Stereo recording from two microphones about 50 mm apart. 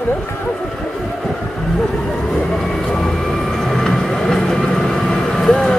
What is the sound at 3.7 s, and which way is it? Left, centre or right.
Vehicle, centre.